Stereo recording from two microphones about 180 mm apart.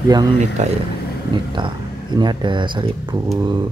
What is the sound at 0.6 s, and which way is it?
Speech, 40° right (ahead or behind).